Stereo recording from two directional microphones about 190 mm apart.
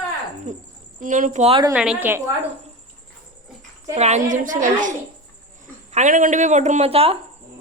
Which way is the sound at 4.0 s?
35° right (ahead or behind).